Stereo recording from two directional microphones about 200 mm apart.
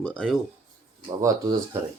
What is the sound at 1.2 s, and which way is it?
Speech, 15° right (ahead or behind).